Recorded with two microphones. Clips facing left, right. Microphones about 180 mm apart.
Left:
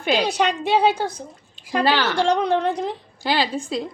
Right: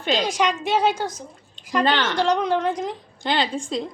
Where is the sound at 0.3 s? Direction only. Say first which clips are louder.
Left 2 dB; 65° left (ahead or behind).